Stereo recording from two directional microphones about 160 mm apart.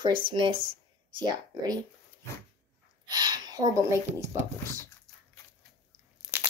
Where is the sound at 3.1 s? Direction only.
25° right (ahead or behind).